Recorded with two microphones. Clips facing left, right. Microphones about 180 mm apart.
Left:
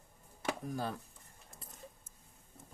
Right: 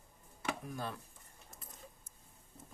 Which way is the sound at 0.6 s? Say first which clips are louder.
Left 4 dB; 35° left (ahead or behind).